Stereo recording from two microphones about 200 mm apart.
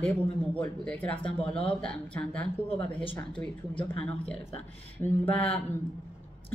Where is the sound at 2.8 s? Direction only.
25° left (ahead or behind).